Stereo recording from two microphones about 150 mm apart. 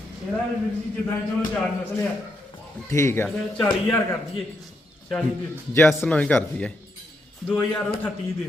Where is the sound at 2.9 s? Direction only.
20° left (ahead or behind).